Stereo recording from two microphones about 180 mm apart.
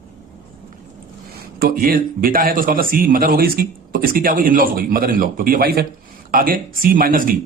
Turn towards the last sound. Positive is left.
turn(degrees=-50)  # may be behind; listen again after turning